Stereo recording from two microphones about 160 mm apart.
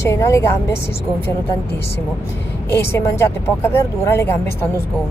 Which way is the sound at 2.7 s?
15° left (ahead or behind).